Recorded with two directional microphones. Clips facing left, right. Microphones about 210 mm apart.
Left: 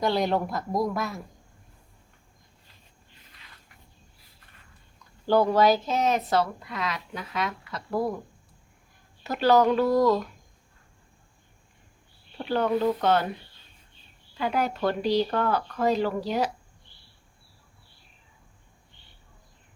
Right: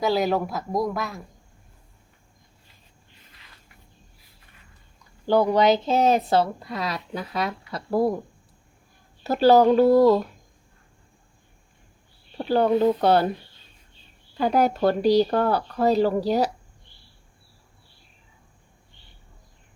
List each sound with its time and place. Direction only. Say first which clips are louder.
0.0 s speech: right 2 dB; 5° right (ahead or behind)
5.2 s speech: right 2 dB; 15° right (ahead or behind); by 8.1 s 35° right (ahead or behind)
9.2 s speech: right 5 dB; 35° right (ahead or behind)
12.4 s speech: right 5 dB; 35° right (ahead or behind)
14.3 s speech: right 6 dB; 40° right (ahead or behind)